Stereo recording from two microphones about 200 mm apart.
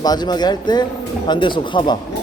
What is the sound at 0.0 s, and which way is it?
Speech, 20° left (ahead or behind).